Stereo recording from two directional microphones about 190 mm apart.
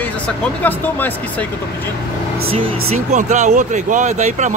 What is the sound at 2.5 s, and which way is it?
Speech, 30° right (ahead or behind).